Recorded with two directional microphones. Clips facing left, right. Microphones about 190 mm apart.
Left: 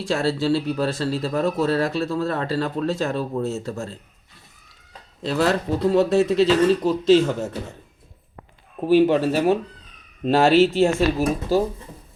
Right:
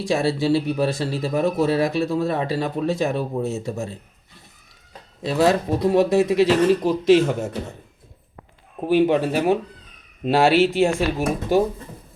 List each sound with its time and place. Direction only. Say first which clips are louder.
0.1 s speech: right 1 dB; 15° right (ahead or behind)
5.2 s speech: right 2 dB; 15° right (ahead or behind)
8.9 s speech: left 1 dB; 15° right (ahead or behind)